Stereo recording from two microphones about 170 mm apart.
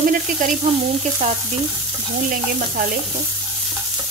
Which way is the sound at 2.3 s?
55° right (ahead or behind).